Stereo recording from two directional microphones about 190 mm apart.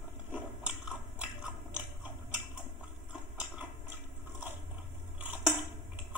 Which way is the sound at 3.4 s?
10° right (ahead or behind).